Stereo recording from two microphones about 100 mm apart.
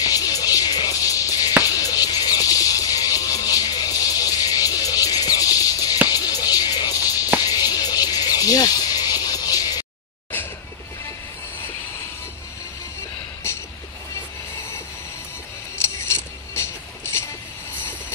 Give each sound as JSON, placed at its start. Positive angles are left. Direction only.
{"t": 0.0, "sound": "music", "side_deg": 40}
{"t": 7.3, "sound": "a sound", "side_deg": 40}
{"t": 16.5, "sound": "music", "side_deg": 25}